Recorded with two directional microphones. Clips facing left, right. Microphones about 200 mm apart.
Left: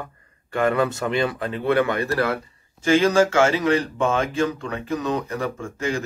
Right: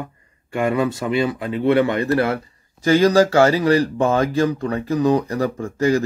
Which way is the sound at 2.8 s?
40° right (ahead or behind).